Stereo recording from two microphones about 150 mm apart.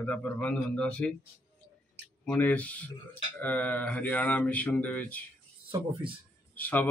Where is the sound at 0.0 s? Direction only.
10° left (ahead or behind).